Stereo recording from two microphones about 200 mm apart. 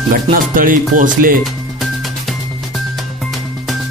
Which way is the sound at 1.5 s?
Centre (ahead or behind).